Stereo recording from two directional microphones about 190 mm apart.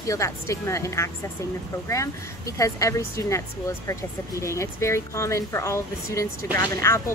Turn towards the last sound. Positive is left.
turn(degrees=15)  # may be behind; listen again after turning